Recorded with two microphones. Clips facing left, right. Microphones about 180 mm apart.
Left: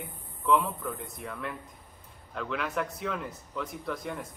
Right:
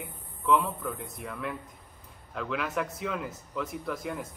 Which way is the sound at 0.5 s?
Centre (ahead or behind).